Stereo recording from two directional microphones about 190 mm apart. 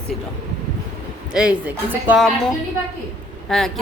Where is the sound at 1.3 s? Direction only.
5° right (ahead or behind).